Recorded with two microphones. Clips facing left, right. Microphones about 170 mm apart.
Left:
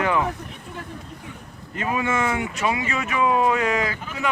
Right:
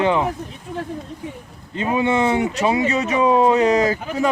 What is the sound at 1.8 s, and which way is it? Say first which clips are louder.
Speech: right 5 dB; 25° right (ahead or behind).